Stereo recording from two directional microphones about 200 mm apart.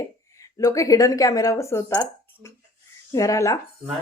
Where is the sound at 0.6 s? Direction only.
15° left (ahead or behind).